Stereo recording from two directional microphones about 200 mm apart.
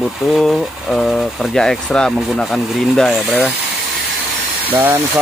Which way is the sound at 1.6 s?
5° left (ahead or behind).